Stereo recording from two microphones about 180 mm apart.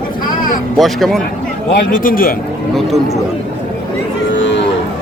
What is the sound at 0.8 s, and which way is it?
Speech, centre (ahead or behind).